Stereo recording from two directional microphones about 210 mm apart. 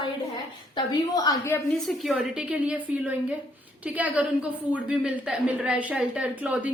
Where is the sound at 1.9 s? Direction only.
Centre (ahead or behind).